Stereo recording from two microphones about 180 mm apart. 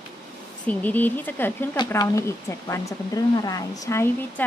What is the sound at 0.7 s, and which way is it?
Speech, 10° left (ahead or behind).